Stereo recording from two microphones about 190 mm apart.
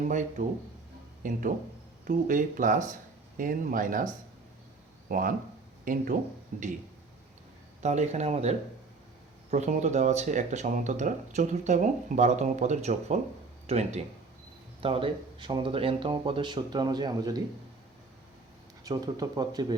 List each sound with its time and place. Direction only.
0.0 s speech: 40° right (ahead or behind)
7.8 s speech: 35° right (ahead or behind); by 17.4 s 20° right (ahead or behind)
18.9 s speech: 20° right (ahead or behind)